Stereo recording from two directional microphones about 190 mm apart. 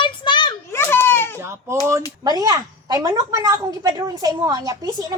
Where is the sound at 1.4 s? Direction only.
15° right (ahead or behind).